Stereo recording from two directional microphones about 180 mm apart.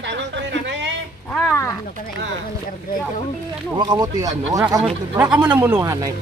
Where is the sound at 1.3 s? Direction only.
10° left (ahead or behind).